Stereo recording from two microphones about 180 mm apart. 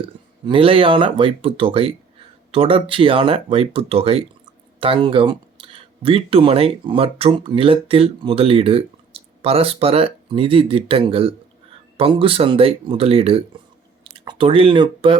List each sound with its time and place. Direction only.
0.4 s speech: 30° right (ahead or behind)